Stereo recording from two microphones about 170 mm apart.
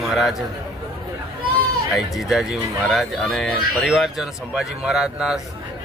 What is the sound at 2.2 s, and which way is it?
A man's voice, centre (ahead or behind).